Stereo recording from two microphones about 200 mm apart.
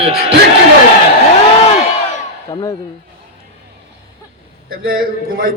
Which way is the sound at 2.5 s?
30° left (ahead or behind).